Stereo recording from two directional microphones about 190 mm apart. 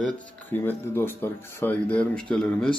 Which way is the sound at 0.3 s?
10° left (ahead or behind).